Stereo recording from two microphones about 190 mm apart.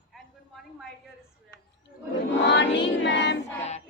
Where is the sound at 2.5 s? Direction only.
65° left (ahead or behind).